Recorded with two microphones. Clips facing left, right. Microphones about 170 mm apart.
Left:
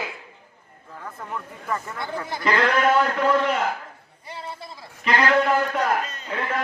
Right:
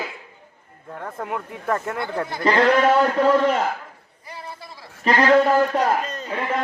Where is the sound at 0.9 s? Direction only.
60° right (ahead or behind).